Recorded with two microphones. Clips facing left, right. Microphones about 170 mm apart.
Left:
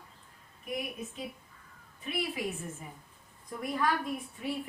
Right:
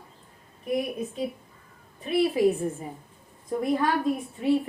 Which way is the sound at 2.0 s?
35° right (ahead or behind).